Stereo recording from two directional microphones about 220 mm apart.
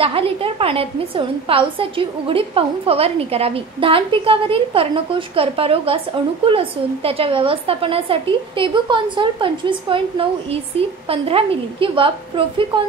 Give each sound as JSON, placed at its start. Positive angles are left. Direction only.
{"t": 0.0, "sound": "a woman's voice", "side_deg": -25}